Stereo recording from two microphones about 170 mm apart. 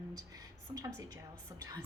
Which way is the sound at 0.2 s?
20° right (ahead or behind).